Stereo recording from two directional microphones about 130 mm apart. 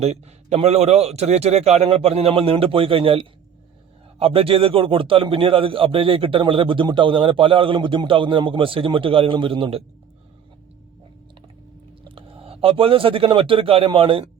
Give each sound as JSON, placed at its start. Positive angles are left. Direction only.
{"t": 0.0, "sound": "a man's voice", "side_deg": -55}
{"t": 12.0, "sound": "speech", "side_deg": -45}